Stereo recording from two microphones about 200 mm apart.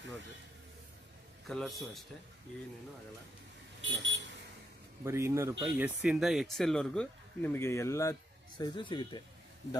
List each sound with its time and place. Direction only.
1.5 s speech: centre (ahead or behind)
3.9 s speech: 65° right (ahead or behind)
5.0 s speech: 15° right (ahead or behind); by 9.2 s 25° left (ahead or behind)